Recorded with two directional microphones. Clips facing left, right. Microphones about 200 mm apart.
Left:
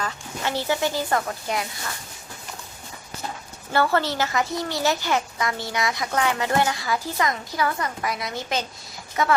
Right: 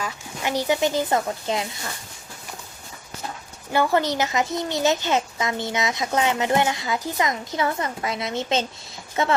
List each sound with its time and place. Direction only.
0.0 s speech: 15° right (ahead or behind)
3.7 s speech: 15° right (ahead or behind)